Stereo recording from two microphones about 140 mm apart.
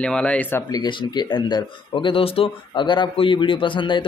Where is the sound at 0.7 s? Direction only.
30° left (ahead or behind).